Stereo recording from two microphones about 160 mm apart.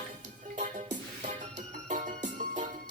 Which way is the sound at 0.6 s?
50° right (ahead or behind).